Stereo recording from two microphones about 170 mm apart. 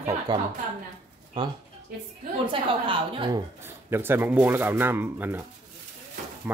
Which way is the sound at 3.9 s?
15° right (ahead or behind).